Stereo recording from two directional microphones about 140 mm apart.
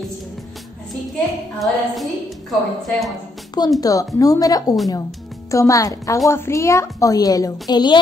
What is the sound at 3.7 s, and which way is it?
A woman's voice, 25° left (ahead or behind).